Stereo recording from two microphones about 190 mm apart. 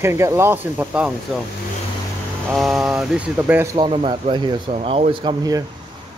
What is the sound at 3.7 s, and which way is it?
Speech, 30° right (ahead or behind).